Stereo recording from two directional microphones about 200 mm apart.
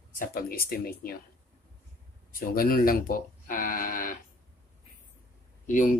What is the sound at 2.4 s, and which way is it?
Speech, 45° left (ahead or behind).